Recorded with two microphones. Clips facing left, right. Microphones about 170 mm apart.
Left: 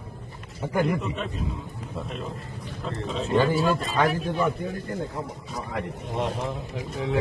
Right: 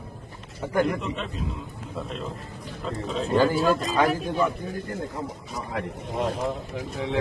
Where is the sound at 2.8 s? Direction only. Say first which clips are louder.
Right 1 dB; centre (ahead or behind).